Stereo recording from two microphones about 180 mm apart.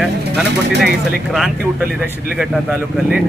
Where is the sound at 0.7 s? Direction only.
70° right (ahead or behind).